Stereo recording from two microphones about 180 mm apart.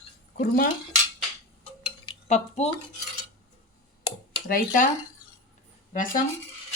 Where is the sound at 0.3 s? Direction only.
50° left (ahead or behind).